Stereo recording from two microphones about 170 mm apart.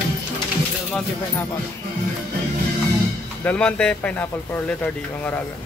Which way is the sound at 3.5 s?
5° left (ahead or behind).